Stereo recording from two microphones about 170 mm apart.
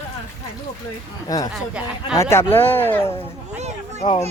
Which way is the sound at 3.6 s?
40° right (ahead or behind).